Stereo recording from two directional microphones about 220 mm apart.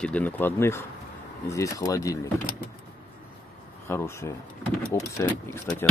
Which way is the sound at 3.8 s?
10° left (ahead or behind).